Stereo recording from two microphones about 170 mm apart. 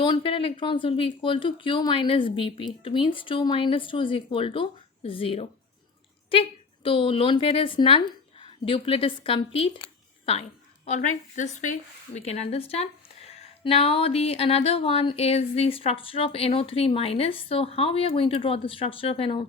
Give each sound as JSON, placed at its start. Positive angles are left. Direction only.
{"t": 0.0, "sound": "speech", "side_deg": 30}
{"t": 10.8, "sound": "speech", "side_deg": 45}